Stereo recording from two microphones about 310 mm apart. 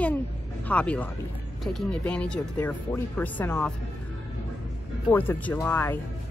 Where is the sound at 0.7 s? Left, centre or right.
Centre.